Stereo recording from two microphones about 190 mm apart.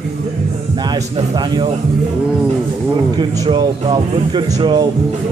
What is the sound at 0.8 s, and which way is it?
Speech, 20° right (ahead or behind).